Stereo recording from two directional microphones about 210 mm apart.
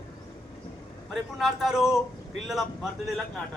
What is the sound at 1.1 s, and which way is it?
A man's voice, centre (ahead or behind).